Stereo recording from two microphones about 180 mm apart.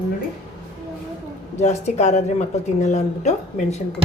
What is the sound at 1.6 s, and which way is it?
Speech, 40° left (ahead or behind).